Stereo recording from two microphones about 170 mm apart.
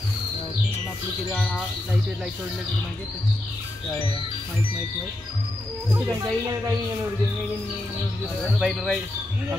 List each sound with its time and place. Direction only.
1.3 s speech: centre (ahead or behind)
5.9 s speech: 20° right (ahead or behind)
8.5 s speech: centre (ahead or behind)